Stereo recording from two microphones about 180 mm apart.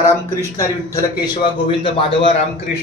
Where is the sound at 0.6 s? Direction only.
20° left (ahead or behind).